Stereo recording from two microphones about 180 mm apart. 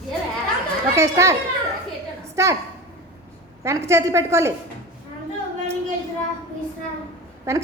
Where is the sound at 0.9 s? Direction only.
15° right (ahead or behind).